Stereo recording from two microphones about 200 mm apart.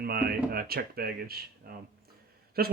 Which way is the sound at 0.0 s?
50° right (ahead or behind).